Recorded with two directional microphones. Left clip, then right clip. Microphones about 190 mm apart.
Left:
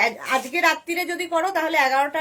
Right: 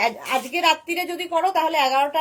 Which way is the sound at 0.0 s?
15° left (ahead or behind).